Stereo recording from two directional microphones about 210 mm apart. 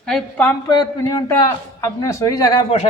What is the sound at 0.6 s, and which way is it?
A man's voice, 20° left (ahead or behind).